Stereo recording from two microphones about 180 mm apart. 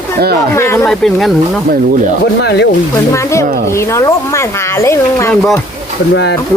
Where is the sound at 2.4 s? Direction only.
65° left (ahead or behind).